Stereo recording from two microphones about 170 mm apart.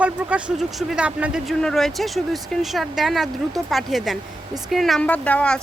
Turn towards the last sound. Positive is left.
turn(degrees=5)  # may be behind; listen again after turning